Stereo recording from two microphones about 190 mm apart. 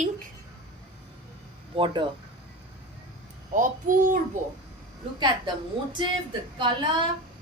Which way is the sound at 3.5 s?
45° right (ahead or behind).